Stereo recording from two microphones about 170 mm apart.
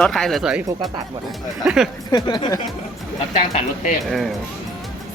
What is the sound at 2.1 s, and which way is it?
Speech, 25° left (ahead or behind).